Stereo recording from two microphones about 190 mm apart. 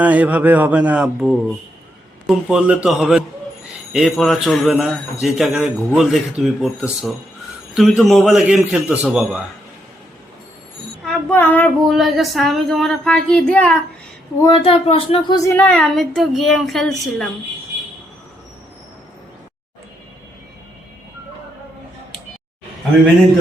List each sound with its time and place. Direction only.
0.0 s a man's voice: 10° right (ahead or behind)
11.0 s speech: 10° left (ahead or behind)
11.9 s speech: centre (ahead or behind)
14.4 s speech: 25° left (ahead or behind)
15.4 s speech: 10° left (ahead or behind)